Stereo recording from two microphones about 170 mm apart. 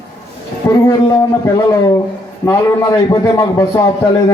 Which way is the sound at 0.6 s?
15° left (ahead or behind).